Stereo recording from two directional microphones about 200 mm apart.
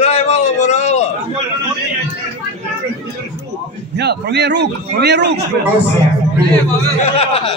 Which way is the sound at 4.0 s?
55° right (ahead or behind).